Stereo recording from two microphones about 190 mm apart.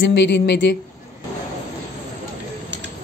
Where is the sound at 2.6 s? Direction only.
70° right (ahead or behind).